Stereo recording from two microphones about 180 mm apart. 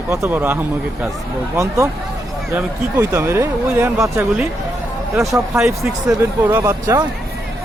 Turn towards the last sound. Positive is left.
turn(degrees=-15)  # may be behind; listen again after turning